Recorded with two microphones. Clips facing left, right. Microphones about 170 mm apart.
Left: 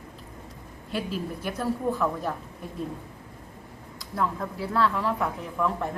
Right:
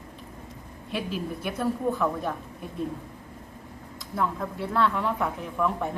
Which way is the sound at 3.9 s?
Centre (ahead or behind).